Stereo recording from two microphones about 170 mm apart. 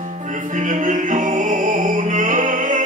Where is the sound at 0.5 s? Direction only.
50° right (ahead or behind).